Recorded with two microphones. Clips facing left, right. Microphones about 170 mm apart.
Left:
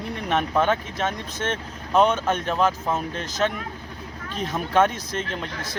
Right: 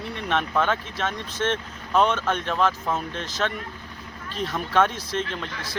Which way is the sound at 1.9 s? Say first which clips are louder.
Left 2 dB; 5° left (ahead or behind).